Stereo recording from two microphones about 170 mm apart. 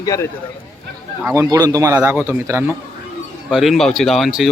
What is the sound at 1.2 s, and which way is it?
Speech, 15° right (ahead or behind).